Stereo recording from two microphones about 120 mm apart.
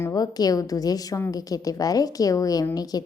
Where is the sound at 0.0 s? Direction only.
30° left (ahead or behind).